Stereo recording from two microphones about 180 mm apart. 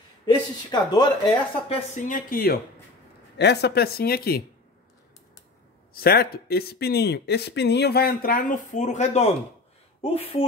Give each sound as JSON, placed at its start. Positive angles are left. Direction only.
{"t": 0.7, "sound": "speech", "side_deg": 25}
{"t": 1.7, "sound": "speech", "side_deg": 45}
{"t": 3.3, "sound": "speech", "side_deg": 70}
{"t": 5.9, "sound": "a woman's voice", "side_deg": 60}